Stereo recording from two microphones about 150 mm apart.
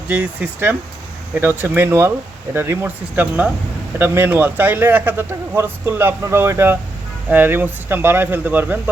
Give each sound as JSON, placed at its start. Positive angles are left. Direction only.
{"t": 0.1, "sound": "speech", "side_deg": -10}